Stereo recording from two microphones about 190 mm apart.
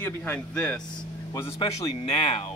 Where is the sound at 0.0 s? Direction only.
10° left (ahead or behind).